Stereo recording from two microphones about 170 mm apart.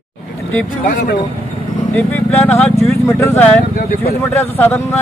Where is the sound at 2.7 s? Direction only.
35° right (ahead or behind).